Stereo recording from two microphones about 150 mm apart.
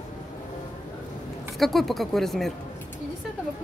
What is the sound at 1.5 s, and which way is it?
Speech, centre (ahead or behind).